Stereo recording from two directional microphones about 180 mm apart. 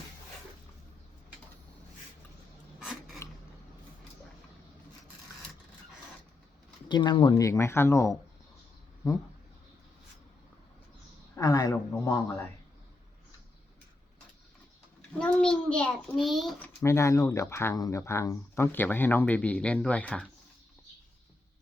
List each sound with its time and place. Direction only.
2.7 s a sound: 5° right (ahead or behind)
3.2 s a sound: 15° left (ahead or behind)
6.8 s speech: 25° left (ahead or behind)
11.3 s a man's voice: 20° left (ahead or behind)
15.2 s a child's voice: 5° left (ahead or behind)
16.8 s speech: 15° left (ahead or behind)